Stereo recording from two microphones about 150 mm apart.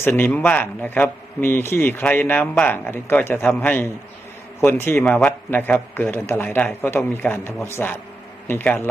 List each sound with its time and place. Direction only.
0.0 s a man's voice: 15° left (ahead or behind)